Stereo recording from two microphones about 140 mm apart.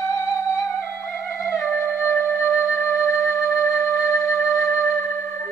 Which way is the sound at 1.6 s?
15° left (ahead or behind).